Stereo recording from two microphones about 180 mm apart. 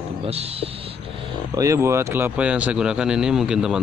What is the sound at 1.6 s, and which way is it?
Speech, 15° right (ahead or behind).